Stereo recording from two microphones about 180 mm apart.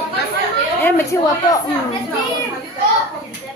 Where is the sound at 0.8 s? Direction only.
15° left (ahead or behind).